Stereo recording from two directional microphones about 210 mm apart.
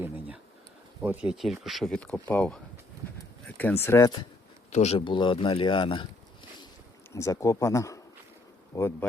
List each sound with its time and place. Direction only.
1.0 s speech: 5° right (ahead or behind); by 4.2 s 15° left (ahead or behind)
4.7 s speech: 30° left (ahead or behind)
7.1 s speech: 15° left (ahead or behind)